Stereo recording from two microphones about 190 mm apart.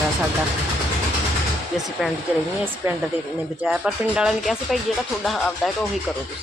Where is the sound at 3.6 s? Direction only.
5° right (ahead or behind).